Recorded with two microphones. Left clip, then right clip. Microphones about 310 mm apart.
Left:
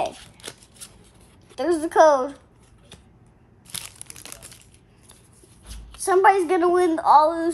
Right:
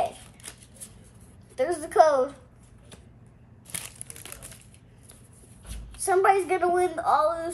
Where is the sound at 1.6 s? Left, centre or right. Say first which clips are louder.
Left 4 dB; left.